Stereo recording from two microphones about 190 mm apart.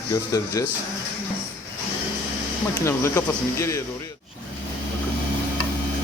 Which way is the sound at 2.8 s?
15° left (ahead or behind).